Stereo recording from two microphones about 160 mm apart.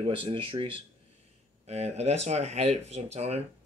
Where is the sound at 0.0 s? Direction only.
30° right (ahead or behind).